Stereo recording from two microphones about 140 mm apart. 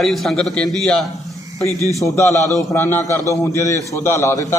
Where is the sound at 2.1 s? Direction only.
20° left (ahead or behind).